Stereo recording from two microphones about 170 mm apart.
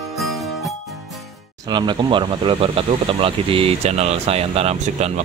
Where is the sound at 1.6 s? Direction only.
25° right (ahead or behind).